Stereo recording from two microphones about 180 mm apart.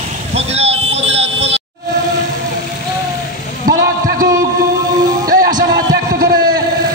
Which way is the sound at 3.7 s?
50° right (ahead or behind).